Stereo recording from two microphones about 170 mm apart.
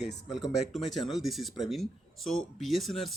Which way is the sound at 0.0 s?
Centre (ahead or behind).